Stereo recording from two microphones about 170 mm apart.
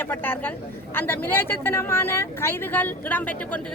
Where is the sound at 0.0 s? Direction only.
10° left (ahead or behind).